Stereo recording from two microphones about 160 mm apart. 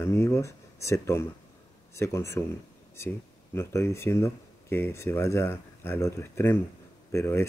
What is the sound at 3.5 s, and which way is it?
Speech, 15° left (ahead or behind).